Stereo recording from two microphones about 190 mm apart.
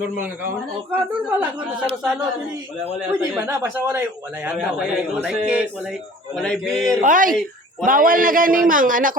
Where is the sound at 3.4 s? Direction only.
15° right (ahead or behind); by 6.9 s centre (ahead or behind).